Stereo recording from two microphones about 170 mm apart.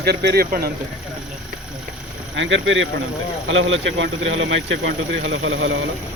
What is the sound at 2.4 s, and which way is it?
Speech, 90° right.